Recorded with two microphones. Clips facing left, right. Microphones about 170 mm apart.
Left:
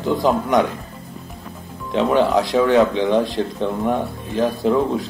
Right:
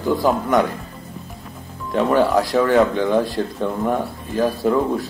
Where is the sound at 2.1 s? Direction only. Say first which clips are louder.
Even; 20° left (ahead or behind).